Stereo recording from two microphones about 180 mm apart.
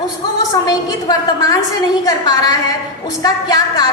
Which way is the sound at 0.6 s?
20° left (ahead or behind).